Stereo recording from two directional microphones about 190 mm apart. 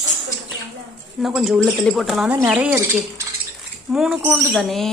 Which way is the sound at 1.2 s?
Centre (ahead or behind).